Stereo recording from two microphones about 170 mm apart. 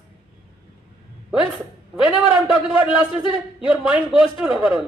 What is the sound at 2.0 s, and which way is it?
Speech, centre (ahead or behind).